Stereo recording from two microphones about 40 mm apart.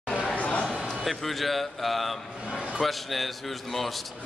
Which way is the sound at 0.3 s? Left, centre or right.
Left.